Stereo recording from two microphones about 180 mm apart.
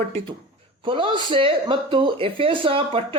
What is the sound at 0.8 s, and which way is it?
A woman's voice, 30° right (ahead or behind).